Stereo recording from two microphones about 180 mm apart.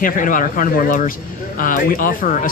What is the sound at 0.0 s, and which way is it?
Speech, 45° left (ahead or behind).